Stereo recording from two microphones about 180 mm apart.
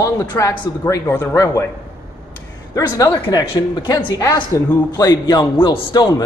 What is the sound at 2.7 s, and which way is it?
Speech, 20° left (ahead or behind).